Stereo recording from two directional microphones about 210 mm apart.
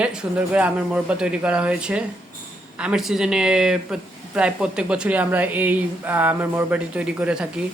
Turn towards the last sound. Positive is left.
turn(degrees=-5)  # may be behind; listen again after turning